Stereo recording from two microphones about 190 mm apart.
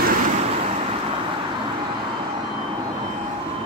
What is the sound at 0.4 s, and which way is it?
Vehicle, 30° right (ahead or behind).